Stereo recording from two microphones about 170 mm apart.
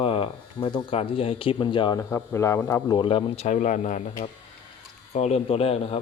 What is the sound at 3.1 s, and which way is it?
Speech, 35° left (ahead or behind).